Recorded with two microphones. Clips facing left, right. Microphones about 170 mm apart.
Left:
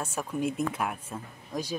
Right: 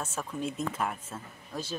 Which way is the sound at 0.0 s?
10° left (ahead or behind).